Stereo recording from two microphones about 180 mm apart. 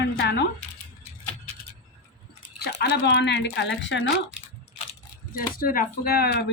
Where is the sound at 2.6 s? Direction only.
70° left (ahead or behind); by 4.1 s 85° left.